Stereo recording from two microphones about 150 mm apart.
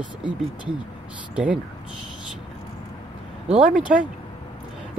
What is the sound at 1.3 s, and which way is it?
Speech, 10° right (ahead or behind).